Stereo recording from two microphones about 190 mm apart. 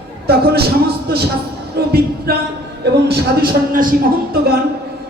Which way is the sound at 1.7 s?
55° right (ahead or behind).